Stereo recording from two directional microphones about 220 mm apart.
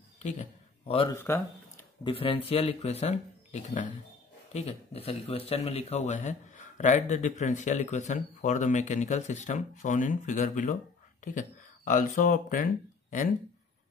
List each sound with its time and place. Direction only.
0.2 s a sound: 30° left (ahead or behind)
1.1 s speech: 10° left (ahead or behind)
2.0 s speech: 25° left (ahead or behind)